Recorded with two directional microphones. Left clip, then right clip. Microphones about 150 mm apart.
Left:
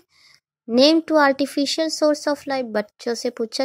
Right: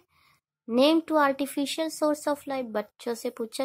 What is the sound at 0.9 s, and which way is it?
Speech, 25° left (ahead or behind).